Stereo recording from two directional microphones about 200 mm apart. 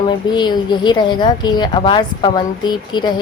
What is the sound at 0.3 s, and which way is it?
A woman's voice, 20° left (ahead or behind).